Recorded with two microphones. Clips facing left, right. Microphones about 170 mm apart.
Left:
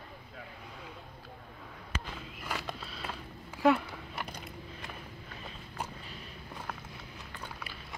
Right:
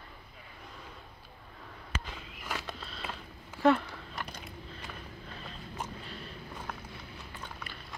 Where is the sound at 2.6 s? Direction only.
5° left (ahead or behind).